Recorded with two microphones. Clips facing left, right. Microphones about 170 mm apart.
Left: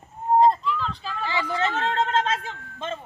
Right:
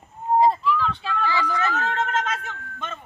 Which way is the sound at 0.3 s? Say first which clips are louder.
Even; 10° right (ahead or behind).